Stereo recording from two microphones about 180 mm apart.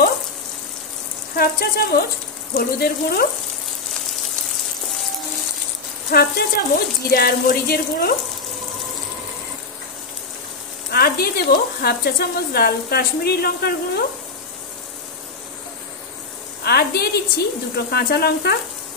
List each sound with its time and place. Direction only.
1.3 s speech: 55° left (ahead or behind)
6.0 s speech: 55° left (ahead or behind)
10.9 s speech: 60° left (ahead or behind)
16.6 s speech: 60° left (ahead or behind)